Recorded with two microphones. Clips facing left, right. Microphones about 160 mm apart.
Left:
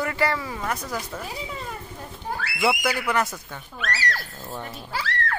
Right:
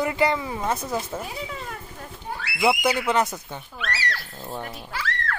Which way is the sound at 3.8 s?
45° left (ahead or behind).